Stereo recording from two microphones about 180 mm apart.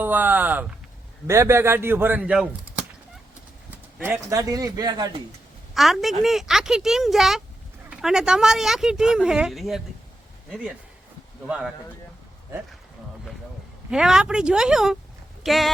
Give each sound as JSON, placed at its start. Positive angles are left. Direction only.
{"t": 0.0, "sound": "speech", "side_deg": -10}
{"t": 3.9, "sound": "a man's voice", "side_deg": -10}
{"t": 5.7, "sound": "speech", "side_deg": 0}
{"t": 11.4, "sound": "speech", "side_deg": -5}
{"t": 13.9, "sound": "speech", "side_deg": -5}